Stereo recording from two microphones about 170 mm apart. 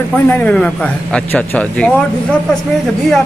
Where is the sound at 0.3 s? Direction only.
5° left (ahead or behind).